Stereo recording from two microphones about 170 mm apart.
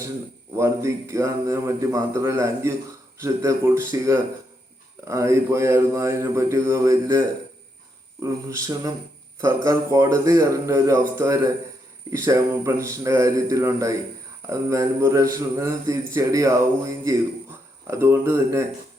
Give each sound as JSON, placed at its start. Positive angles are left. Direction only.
{"t": 0.5, "sound": "a man's voice", "side_deg": -15}